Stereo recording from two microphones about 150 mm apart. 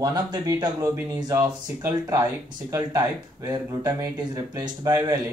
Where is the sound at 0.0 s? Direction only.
25° right (ahead or behind).